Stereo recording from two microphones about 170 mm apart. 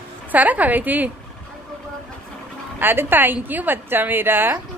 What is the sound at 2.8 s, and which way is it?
A woman's voice, 10° right (ahead or behind).